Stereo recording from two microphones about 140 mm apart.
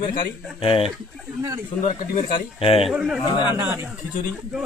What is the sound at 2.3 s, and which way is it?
Speech, 40° left (ahead or behind).